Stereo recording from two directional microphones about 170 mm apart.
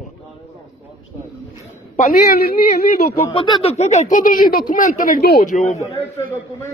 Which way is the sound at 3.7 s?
40° left (ahead or behind).